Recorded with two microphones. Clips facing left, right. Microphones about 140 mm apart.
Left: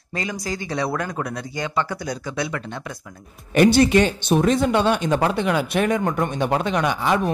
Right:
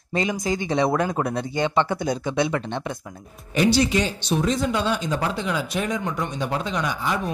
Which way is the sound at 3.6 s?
55° left (ahead or behind).